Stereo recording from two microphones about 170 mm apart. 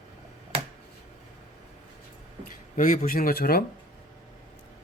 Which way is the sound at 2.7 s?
50° left (ahead or behind).